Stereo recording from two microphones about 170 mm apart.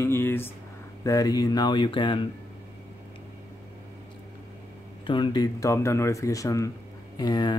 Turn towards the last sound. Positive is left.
turn(degrees=25)  # may be behind; listen again after turning